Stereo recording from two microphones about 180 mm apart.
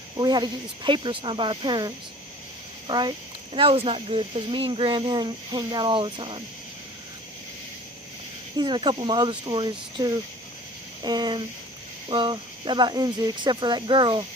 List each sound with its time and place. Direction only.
0.2 s speech: 25° right (ahead or behind)
8.5 s speech: 25° right (ahead or behind)